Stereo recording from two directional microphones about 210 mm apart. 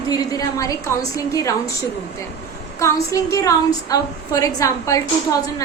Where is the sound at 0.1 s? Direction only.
15° left (ahead or behind).